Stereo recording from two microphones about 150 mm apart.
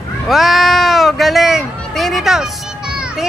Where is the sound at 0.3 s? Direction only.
Centre (ahead or behind).